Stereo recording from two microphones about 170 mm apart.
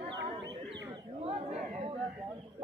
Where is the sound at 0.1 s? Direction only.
90° right.